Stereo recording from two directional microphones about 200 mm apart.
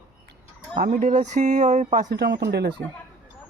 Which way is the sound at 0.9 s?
35° right (ahead or behind).